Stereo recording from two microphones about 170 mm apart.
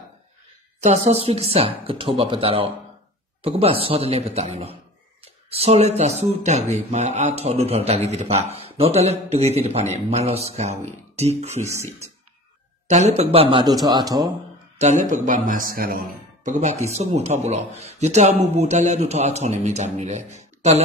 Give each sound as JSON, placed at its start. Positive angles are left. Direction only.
{"t": 0.7, "sound": "speech", "side_deg": -40}
{"t": 12.8, "sound": "speech", "side_deg": -40}
{"t": 14.8, "sound": "a man's voice", "side_deg": -45}